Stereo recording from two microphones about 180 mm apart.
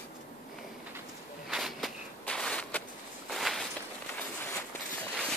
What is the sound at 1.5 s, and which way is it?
Walk, centre (ahead or behind).